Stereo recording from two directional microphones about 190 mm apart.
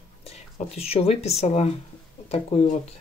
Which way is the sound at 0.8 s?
35° left (ahead or behind).